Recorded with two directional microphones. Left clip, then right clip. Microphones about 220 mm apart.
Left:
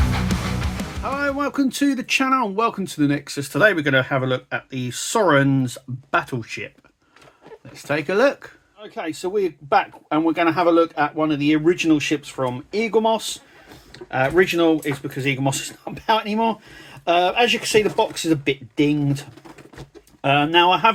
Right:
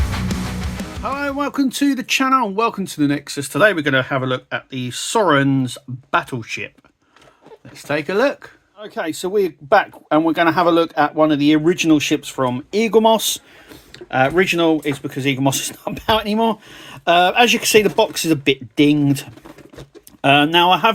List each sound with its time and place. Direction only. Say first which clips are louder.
1.0 s speech: right 1 dB; 10° right (ahead or behind)
7.8 s speech: right 1 dB; 10° right (ahead or behind)
8.8 s speech: right 4 dB; 30° right (ahead or behind)